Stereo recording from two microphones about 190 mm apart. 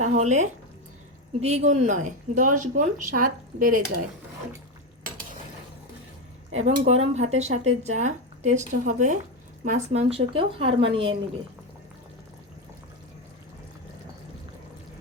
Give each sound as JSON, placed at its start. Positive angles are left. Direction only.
{"t": 0.0, "sound": "a woman's voice", "side_deg": -40}
{"t": 6.5, "sound": "speech", "side_deg": -35}